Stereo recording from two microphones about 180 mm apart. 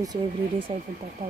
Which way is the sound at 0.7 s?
30° right (ahead or behind).